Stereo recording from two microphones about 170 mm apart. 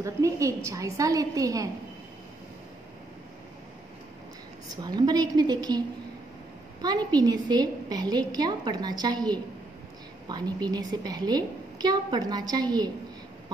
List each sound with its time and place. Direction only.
0.0 s a woman's voice: 20° right (ahead or behind)
4.8 s a woman's voice: 25° right (ahead or behind)
6.8 s a woman's voice: 25° right (ahead or behind)